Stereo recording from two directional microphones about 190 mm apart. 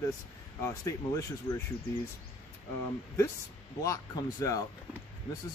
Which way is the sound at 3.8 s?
20° left (ahead or behind).